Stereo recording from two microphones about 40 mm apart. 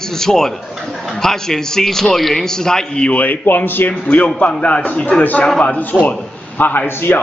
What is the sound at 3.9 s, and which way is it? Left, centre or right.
Speech, left.